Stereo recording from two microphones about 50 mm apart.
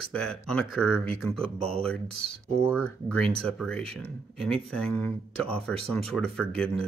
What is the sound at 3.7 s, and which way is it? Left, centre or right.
Speech, centre.